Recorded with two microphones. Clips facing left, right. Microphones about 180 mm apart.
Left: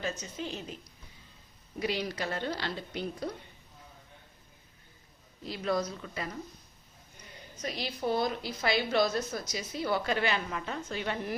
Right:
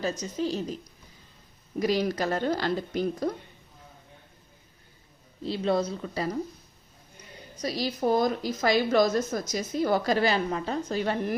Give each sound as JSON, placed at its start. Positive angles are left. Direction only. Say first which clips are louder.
{"t": 0.0, "sound": "a woman's voice", "louder": "right 7 dB", "side_deg": -40}
{"t": 1.8, "sound": "speech", "louder": "right 7 dB", "side_deg": -45}
{"t": 5.4, "sound": "a woman's voice", "louder": "right 5 dB", "side_deg": -30}
{"t": 7.5, "sound": "a woman's voice", "louder": "right 7 dB", "side_deg": -35}